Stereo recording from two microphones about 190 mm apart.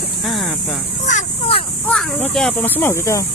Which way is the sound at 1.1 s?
35° left (ahead or behind).